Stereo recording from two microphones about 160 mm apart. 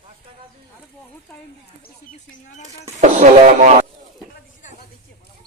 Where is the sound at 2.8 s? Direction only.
50° right (ahead or behind).